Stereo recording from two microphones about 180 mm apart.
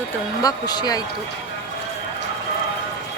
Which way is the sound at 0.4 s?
20° left (ahead or behind).